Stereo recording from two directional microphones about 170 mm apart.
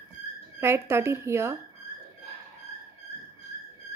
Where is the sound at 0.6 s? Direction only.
15° right (ahead or behind).